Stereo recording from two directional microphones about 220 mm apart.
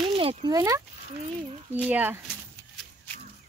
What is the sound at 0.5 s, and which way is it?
Speech, 15° right (ahead or behind).